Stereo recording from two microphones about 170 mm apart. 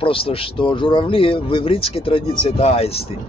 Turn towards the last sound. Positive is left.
turn(degrees=35)  # may be behind; listen again after turning